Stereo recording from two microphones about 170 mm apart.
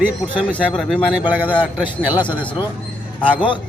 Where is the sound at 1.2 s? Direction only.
10° right (ahead or behind).